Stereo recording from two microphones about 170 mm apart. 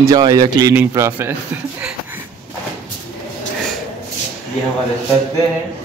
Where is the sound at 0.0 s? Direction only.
20° right (ahead or behind).